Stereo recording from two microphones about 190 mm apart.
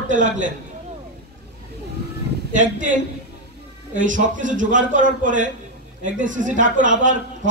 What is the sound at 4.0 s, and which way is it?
A man's voice, 40° right (ahead or behind).